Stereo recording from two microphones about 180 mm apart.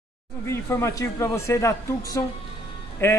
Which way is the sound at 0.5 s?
15° left (ahead or behind).